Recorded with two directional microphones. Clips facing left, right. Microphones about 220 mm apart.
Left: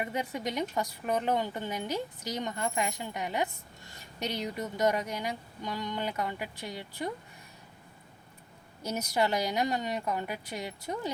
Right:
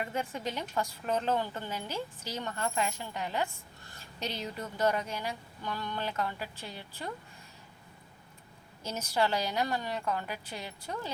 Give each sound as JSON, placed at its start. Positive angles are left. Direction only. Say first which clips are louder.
{"t": 0.0, "sound": "a woman's voice", "louder": "left 2 dB", "side_deg": 15}
{"t": 8.9, "sound": "a woman's voice", "louder": "left 1 dB", "side_deg": 15}